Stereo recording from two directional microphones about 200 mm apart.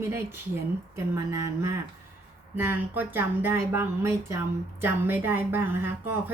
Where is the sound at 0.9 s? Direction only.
15° right (ahead or behind).